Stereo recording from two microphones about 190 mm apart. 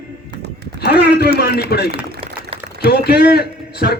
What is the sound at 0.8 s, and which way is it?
A man's voice, 55° left (ahead or behind).